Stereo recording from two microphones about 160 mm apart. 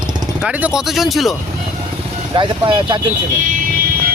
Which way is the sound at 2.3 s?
30° right (ahead or behind).